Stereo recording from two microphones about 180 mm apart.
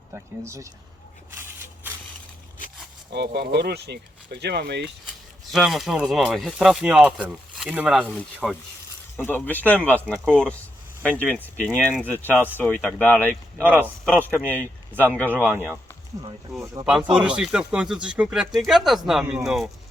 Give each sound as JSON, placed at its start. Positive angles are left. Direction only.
{"t": 0.1, "sound": "speech", "side_deg": -15}
{"t": 3.1, "sound": "speech", "side_deg": -65}
{"t": 5.5, "sound": "speech", "side_deg": 0}
{"t": 9.1, "sound": "speech", "side_deg": 10}
{"t": 13.7, "sound": "speech", "side_deg": -10}
{"t": 14.4, "sound": "speech", "side_deg": 10}
{"t": 16.8, "sound": "speech", "side_deg": -5}